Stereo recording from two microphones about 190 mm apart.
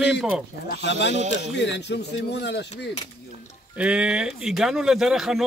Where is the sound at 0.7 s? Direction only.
65° left (ahead or behind).